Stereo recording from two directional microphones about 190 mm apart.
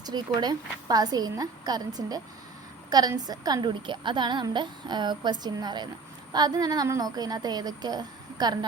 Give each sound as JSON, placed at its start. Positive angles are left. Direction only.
{"t": 0.0, "sound": "a woman's voice", "side_deg": -20}